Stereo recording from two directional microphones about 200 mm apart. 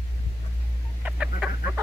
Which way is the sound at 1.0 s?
5° right (ahead or behind).